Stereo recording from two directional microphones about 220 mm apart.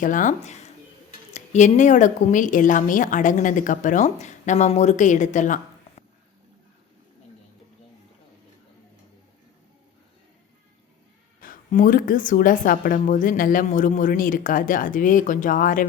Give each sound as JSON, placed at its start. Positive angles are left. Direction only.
{"t": 0.0, "sound": "a woman's voice", "side_deg": 35}
{"t": 11.3, "sound": "a woman's voice", "side_deg": 40}